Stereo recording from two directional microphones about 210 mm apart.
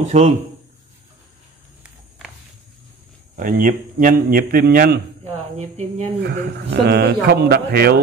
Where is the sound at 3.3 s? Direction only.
40° right (ahead or behind).